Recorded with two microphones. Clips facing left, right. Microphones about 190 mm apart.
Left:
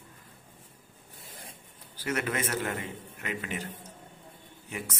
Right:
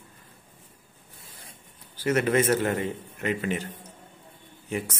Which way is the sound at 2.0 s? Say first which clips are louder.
Right 9 dB; 30° right (ahead or behind).